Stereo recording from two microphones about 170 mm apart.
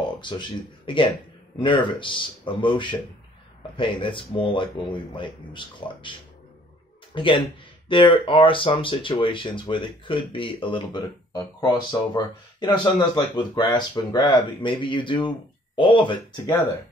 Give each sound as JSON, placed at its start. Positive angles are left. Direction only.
{"t": 0.2, "sound": "speech", "side_deg": 25}
{"t": 7.2, "sound": "speech", "side_deg": 30}